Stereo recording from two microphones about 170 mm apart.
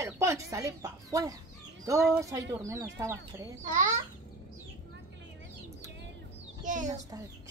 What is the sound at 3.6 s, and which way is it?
Speech, 50° right (ahead or behind).